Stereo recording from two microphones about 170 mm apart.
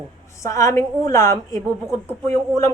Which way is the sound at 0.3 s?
20° left (ahead or behind).